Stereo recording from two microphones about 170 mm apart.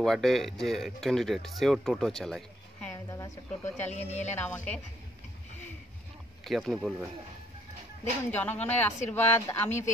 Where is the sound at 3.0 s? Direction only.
20° left (ahead or behind).